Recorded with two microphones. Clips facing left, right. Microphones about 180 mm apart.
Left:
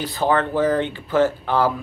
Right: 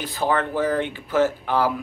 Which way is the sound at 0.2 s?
5° right (ahead or behind).